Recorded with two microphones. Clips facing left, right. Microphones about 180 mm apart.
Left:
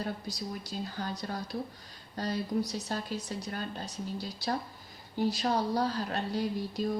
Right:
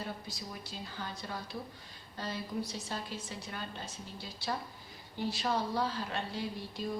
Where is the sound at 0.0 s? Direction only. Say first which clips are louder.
Left 5 dB; 40° left (ahead or behind).